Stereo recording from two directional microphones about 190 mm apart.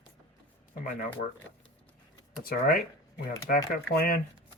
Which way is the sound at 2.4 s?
50° left (ahead or behind).